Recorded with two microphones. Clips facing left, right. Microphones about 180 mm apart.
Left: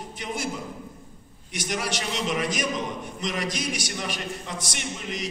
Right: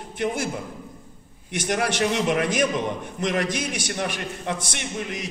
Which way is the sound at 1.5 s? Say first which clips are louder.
Right 5 dB; 55° right (ahead or behind).